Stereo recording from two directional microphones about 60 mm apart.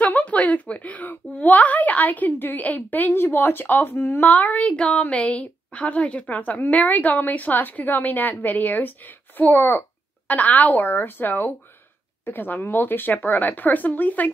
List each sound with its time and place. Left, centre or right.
0.0 s a woman's voice: left
3.1 s speech: left
4.2 s a woman's voice: left